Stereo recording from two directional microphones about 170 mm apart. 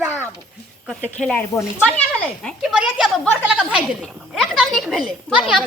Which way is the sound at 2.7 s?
5° right (ahead or behind).